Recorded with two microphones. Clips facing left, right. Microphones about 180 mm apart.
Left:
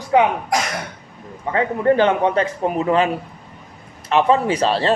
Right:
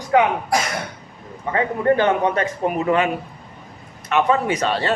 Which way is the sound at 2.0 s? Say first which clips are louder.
Left 1 dB; 30° left (ahead or behind).